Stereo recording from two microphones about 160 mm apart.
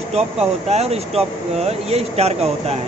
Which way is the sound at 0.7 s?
40° right (ahead or behind).